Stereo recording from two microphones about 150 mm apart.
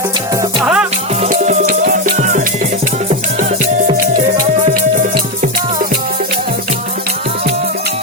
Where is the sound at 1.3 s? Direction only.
50° right (ahead or behind).